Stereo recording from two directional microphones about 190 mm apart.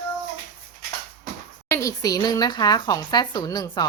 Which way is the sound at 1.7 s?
15° left (ahead or behind).